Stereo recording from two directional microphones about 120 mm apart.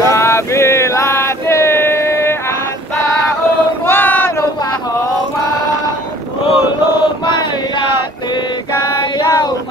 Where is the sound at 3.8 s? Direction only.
15° left (ahead or behind).